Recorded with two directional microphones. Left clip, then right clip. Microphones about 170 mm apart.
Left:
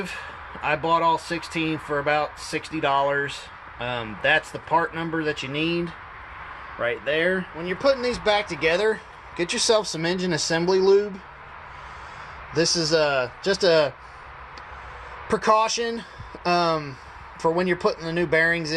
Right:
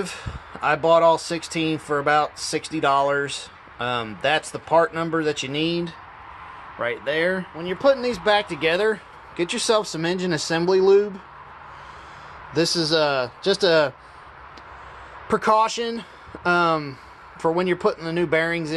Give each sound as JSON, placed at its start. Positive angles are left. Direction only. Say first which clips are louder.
{"t": 0.6, "sound": "speech", "louder": "right 5 dB", "side_deg": -25}
{"t": 12.5, "sound": "speech", "louder": "right 1 dB", "side_deg": -10}
{"t": 15.3, "sound": "speech", "louder": "right 1 dB", "side_deg": -15}